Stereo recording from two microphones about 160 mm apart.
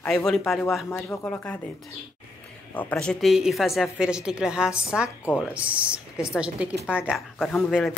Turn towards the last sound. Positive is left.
turn(degrees=0)  # may be behind; listen again after turning